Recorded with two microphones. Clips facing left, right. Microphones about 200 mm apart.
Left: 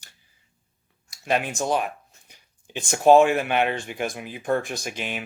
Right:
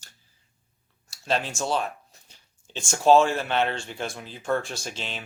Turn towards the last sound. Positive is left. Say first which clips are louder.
# left 4 dB
turn(degrees=15)  # may be behind; listen again after turning